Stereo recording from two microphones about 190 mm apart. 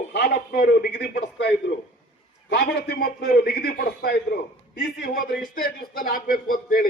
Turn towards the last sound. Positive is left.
turn(degrees=50)  # may be behind; listen again after turning